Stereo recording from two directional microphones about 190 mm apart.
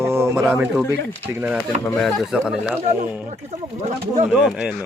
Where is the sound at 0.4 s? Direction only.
10° right (ahead or behind).